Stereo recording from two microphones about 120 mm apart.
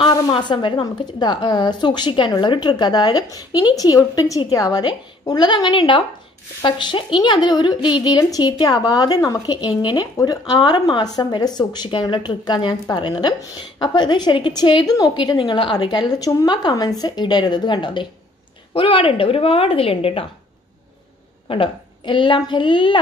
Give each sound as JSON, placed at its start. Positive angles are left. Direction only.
{"t": 0.1, "sound": "speech", "side_deg": 40}
{"t": 21.5, "sound": "speech", "side_deg": 45}